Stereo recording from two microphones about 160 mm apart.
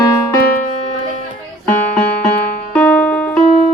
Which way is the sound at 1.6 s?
10° left (ahead or behind).